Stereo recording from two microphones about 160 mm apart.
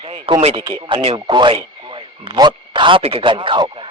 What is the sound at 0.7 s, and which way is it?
A man's voice, 30° right (ahead or behind).